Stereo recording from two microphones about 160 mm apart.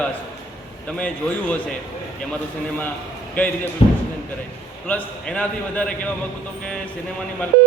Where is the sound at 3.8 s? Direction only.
40° left (ahead or behind).